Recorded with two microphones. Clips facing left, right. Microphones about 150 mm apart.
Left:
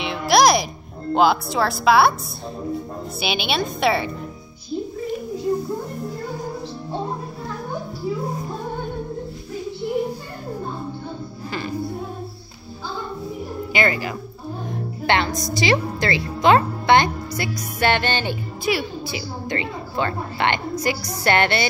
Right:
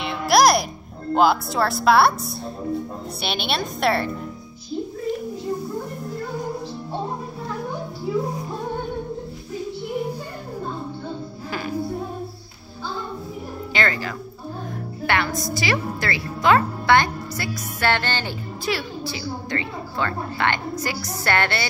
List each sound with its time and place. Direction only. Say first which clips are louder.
0.0 s music: left 1 dB; centre (ahead or behind)
1.1 s a woman's voice: left 1 dB; centre (ahead or behind)
3.2 s a woman's voice: left 3 dB; centre (ahead or behind)
13.7 s speech: left 3 dB; 10° left (ahead or behind)
14.7 s music: left 3 dB; 20° left (ahead or behind)
15.5 s speech: left 7 dB; 20° left (ahead or behind)